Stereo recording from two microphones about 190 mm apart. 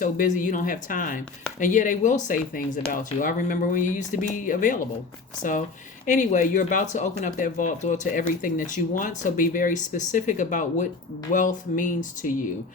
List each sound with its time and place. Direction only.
0.0 s speech: 45° left (ahead or behind)